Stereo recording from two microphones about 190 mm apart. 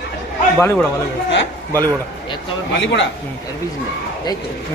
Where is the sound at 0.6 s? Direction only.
10° left (ahead or behind).